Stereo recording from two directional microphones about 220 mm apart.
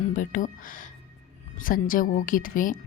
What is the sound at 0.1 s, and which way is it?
Speech, 35° left (ahead or behind).